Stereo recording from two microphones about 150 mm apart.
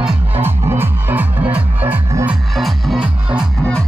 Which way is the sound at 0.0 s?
10° right (ahead or behind).